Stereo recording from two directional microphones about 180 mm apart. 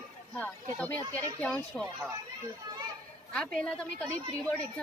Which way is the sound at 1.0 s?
20° right (ahead or behind).